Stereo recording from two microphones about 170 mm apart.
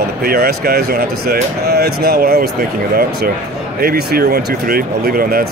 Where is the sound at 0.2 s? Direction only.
65° right (ahead or behind).